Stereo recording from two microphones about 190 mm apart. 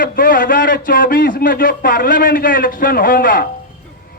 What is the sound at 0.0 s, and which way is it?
A man's voice, 50° left (ahead or behind).